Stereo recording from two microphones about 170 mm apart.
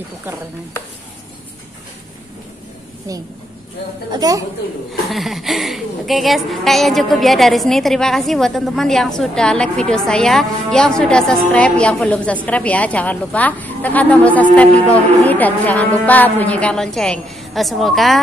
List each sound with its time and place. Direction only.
3.1 s a woman's voice: 20° right (ahead or behind)
5.1 s a woman's voice: centre (ahead or behind)